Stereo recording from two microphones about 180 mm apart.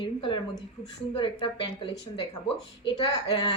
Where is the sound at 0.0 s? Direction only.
25° left (ahead or behind).